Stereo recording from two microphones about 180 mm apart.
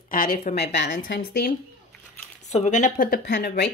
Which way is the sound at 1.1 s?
60° left (ahead or behind).